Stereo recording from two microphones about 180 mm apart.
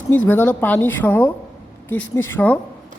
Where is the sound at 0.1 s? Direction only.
10° left (ahead or behind).